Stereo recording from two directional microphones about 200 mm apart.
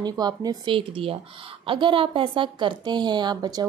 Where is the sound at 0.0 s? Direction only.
20° right (ahead or behind).